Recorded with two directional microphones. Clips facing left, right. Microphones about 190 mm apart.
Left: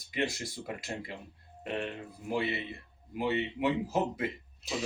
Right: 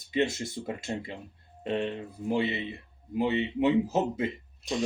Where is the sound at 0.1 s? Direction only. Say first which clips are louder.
Right 6 dB; 25° right (ahead or behind).